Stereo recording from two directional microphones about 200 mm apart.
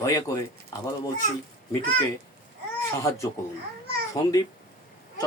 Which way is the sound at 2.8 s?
15° left (ahead or behind).